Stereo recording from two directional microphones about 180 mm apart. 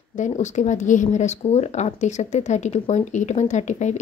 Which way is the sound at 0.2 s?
40° left (ahead or behind).